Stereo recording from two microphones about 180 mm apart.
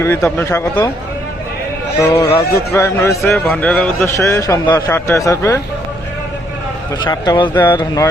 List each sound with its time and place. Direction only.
0.0 s speech: 15° left (ahead or behind)
2.0 s speech: 20° left (ahead or behind)
3.3 s speech: 5° left (ahead or behind)
4.2 s speech: 15° left (ahead or behind)
7.0 s speech: 25° left (ahead or behind)